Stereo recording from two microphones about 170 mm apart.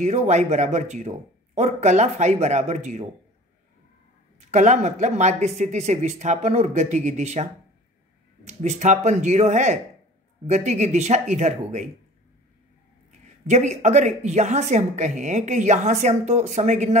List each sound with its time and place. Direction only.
0.0 s speech: 40° right (ahead or behind)
4.4 s speech: 45° right (ahead or behind)
8.5 s speech: 45° right (ahead or behind)
13.5 s speech: 45° right (ahead or behind)